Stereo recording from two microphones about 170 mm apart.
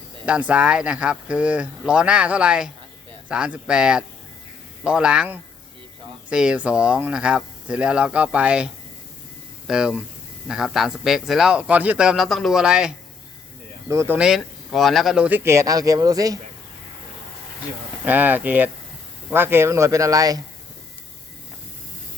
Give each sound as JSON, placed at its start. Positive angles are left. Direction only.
{"t": 0.3, "sound": "a man's voice", "side_deg": -5}
{"t": 13.8, "sound": "speech", "side_deg": -15}
{"t": 14.2, "sound": "speech", "side_deg": 0}
{"t": 18.0, "sound": "speech", "side_deg": -10}